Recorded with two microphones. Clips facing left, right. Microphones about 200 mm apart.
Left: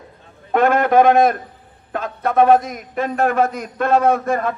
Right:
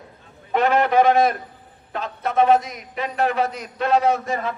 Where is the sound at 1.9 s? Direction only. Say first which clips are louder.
Left 4 dB; 50° left (ahead or behind).